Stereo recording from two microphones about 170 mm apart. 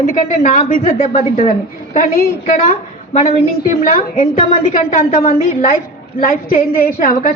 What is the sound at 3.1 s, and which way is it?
Speech, 40° left (ahead or behind).